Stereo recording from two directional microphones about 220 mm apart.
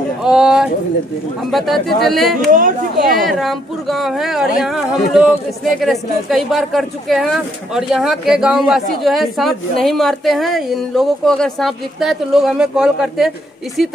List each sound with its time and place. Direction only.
0.2 s speech: 5° right (ahead or behind)
2.0 s a woman's voice: centre (ahead or behind)
2.5 s speech: 35° right (ahead or behind)
3.2 s a woman's voice: centre (ahead or behind)